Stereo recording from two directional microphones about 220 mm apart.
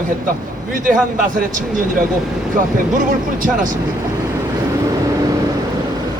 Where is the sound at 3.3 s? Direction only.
35° right (ahead or behind).